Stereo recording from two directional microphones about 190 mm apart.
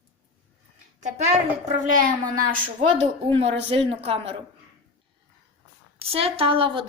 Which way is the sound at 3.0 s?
30° right (ahead or behind).